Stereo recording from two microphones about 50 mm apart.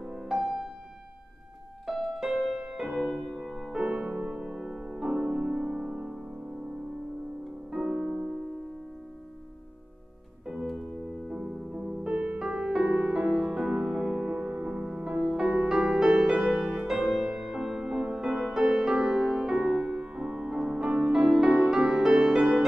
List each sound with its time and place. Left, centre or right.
0.0 s music: centre
1.9 s music: centre
3.0 s music: centre
3.7 s music: centre
7.7 s music: centre
10.5 s music: centre; by 12.6 s right
12.8 s music: right
13.1 s music: centre
14.3 s music: right
15.3 s music: right